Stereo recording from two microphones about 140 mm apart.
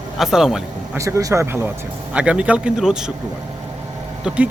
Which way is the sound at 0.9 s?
20° right (ahead or behind).